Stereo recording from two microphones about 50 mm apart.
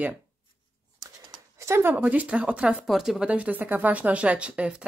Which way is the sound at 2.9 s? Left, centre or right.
Centre.